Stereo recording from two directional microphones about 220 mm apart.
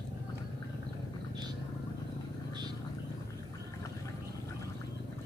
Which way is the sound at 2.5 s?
20° right (ahead or behind).